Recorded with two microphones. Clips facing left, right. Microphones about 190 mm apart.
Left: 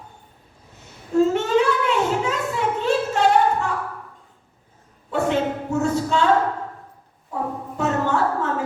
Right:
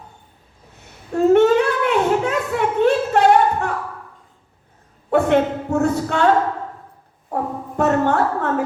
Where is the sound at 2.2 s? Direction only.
60° right (ahead or behind).